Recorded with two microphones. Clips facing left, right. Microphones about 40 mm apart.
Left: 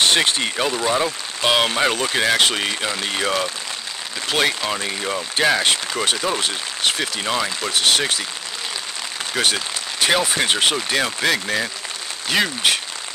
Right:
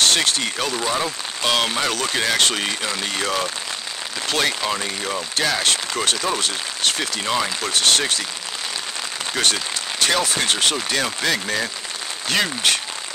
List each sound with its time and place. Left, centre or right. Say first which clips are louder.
0.0 s speech: left 2 dB; centre
5.9 s speech: left 1 dB; centre
9.3 s speech: left 1 dB; centre